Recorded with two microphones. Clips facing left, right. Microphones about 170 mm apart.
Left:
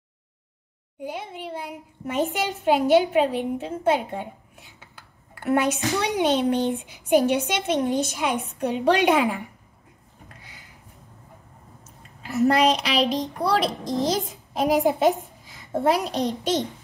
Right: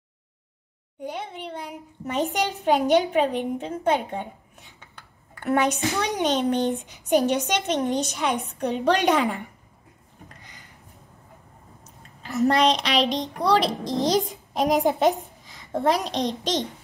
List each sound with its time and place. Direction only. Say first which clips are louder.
0.9 s a child's voice: even; 5° left (ahead or behind)
11.8 s a woman's voice: left 1 dB; 5° left (ahead or behind)
15.4 s a sound: left 1 dB; 5° left (ahead or behind)
16.3 s a woman's voice: left 2 dB; 5° left (ahead or behind)